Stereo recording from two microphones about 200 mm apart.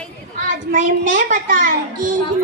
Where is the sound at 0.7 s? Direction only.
40° right (ahead or behind).